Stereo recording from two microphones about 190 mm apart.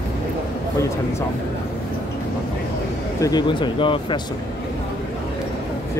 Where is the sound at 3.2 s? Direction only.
20° left (ahead or behind).